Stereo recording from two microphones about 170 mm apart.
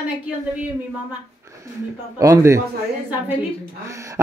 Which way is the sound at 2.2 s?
20° right (ahead or behind).